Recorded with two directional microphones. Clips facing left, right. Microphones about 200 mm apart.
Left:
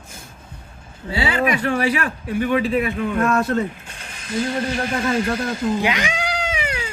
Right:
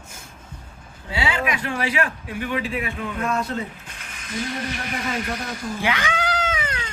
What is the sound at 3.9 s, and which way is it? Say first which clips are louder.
Mechanisms: left 5 dB; 30° left (ahead or behind).